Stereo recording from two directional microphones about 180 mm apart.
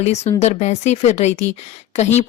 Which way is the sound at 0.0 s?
40° left (ahead or behind).